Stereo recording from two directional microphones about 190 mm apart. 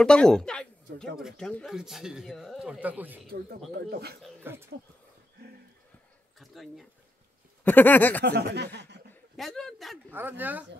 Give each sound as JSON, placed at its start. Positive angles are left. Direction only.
{"t": 0.0, "sound": "speech", "side_deg": 5}
{"t": 3.3, "sound": "speech", "side_deg": -55}
{"t": 4.4, "sound": "speech", "side_deg": -10}
{"t": 6.4, "sound": "speech", "side_deg": 0}
{"t": 8.3, "sound": "speech", "side_deg": -60}
{"t": 9.1, "sound": "a man's voice", "side_deg": 0}
{"t": 10.1, "sound": "speech", "side_deg": -10}